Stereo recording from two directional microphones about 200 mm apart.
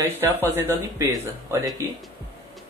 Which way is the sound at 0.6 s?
15° right (ahead or behind).